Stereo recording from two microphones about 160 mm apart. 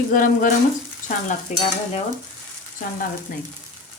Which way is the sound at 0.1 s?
60° left (ahead or behind).